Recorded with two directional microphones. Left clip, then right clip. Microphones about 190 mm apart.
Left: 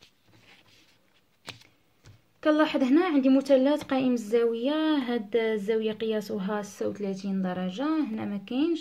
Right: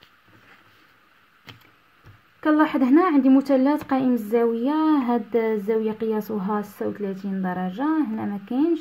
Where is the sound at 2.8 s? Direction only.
30° right (ahead or behind).